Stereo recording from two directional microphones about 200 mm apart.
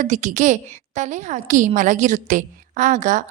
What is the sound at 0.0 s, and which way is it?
A woman's voice, 35° right (ahead or behind).